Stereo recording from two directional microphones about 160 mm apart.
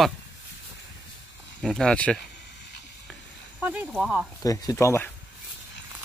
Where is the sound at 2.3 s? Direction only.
90° left.